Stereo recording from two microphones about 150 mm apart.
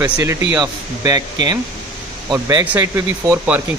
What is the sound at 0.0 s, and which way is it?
Speech, 20° right (ahead or behind).